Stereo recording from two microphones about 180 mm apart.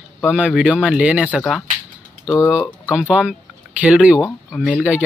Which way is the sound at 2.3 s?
15° left (ahead or behind).